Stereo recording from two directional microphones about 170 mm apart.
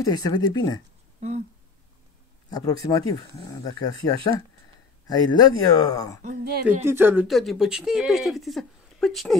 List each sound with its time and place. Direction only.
0.0 s speech: 20° left (ahead or behind)
2.5 s speech: 20° left (ahead or behind)
6.2 s speech: 65° right (ahead or behind)
6.8 s speech: 15° right (ahead or behind)
7.2 s speech: centre (ahead or behind)